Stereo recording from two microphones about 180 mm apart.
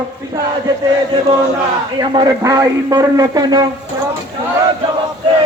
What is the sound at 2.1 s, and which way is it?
Speech, 20° right (ahead or behind).